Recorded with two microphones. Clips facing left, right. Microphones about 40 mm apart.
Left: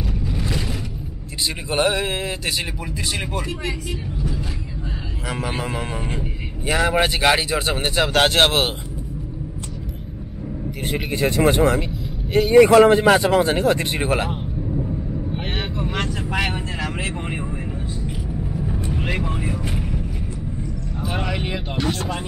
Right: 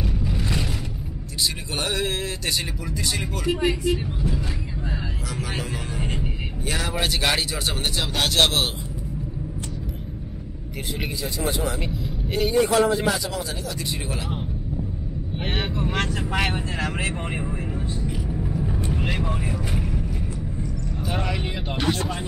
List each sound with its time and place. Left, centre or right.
1.9 s speech: centre
3.4 s speech: centre
5.3 s a man's voice: left
11.1 s speech: left
11.8 s vehicle: centre
12.5 s a man's voice: left
15.3 s speech: centre
16.5 s speech: centre
17.2 s speech: centre
18.4 s vehicle: centre
19.0 s vehicle: centre
21.0 s speech: centre